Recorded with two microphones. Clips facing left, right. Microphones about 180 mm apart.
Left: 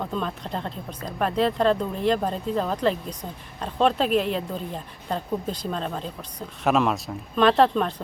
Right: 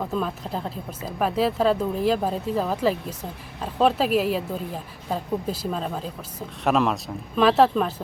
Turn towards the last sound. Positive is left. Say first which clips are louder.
# right 1 dB
turn(degrees=-5)  # may be behind; listen again after turning